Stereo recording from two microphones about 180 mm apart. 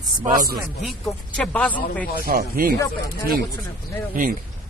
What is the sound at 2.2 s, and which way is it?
Speech, 55° right (ahead or behind).